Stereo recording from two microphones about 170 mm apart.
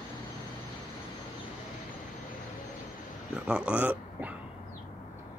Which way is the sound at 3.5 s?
5° right (ahead or behind).